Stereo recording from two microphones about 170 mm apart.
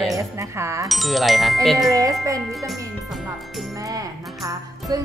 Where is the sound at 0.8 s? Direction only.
Centre (ahead or behind).